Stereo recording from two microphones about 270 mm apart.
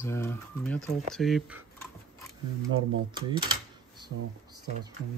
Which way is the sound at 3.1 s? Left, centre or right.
Centre.